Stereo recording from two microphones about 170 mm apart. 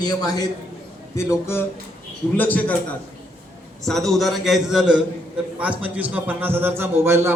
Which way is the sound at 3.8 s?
Centre (ahead or behind).